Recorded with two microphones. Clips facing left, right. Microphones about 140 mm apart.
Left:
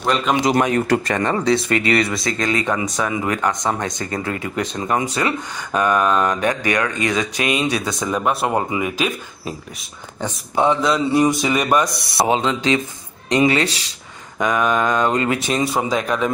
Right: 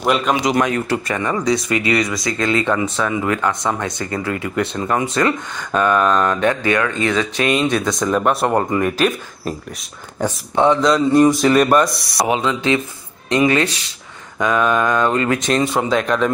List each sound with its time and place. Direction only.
0.4 s speech: 35° left (ahead or behind)
2.4 s speech: 15° left (ahead or behind)
10.5 s speech: 10° left (ahead or behind)
11.4 s speech: centre (ahead or behind)
12.2 s mantra: 25° left (ahead or behind)
15.3 s speech: 5° left (ahead or behind)